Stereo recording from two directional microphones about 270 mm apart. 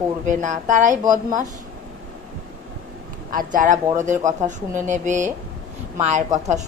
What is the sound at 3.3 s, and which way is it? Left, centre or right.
Speech, right.